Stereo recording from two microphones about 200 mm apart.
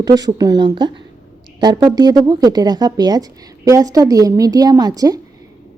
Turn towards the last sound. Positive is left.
turn(degrees=-20)  # may be behind; listen again after turning